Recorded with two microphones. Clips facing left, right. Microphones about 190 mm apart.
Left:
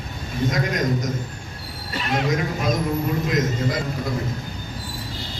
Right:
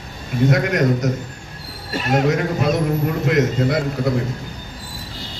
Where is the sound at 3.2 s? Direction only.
65° right (ahead or behind).